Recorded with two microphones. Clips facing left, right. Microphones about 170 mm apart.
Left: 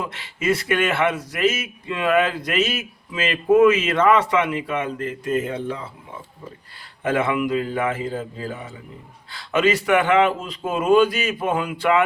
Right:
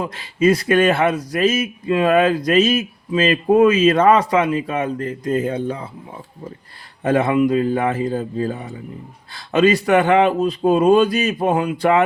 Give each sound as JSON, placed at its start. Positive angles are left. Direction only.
{"t": 0.0, "sound": "speech", "side_deg": -35}
{"t": 7.0, "sound": "speech", "side_deg": -35}